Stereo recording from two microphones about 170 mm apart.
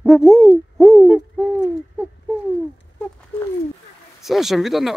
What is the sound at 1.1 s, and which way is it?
Owl, 10° right (ahead or behind).